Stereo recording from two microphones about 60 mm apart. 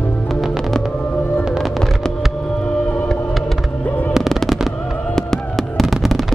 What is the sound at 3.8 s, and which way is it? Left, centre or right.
Music, left.